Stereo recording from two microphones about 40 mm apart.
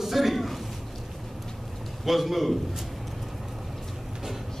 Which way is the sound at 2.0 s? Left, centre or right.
Centre.